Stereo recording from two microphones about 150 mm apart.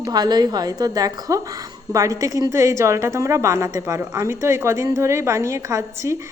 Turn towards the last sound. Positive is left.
turn(degrees=-20)  # may be behind; listen again after turning